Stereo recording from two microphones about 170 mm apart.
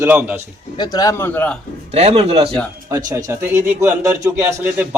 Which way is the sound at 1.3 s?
10° left (ahead or behind).